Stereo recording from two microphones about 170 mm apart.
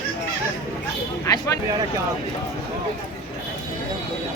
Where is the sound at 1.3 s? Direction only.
20° left (ahead or behind).